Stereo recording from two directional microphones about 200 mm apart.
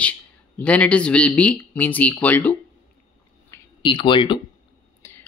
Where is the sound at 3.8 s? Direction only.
25° left (ahead or behind).